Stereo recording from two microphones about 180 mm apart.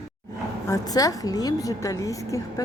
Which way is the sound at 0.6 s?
20° left (ahead or behind).